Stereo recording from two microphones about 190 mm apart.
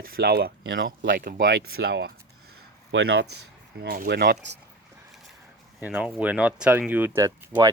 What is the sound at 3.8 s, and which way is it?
Speech, 55° right (ahead or behind).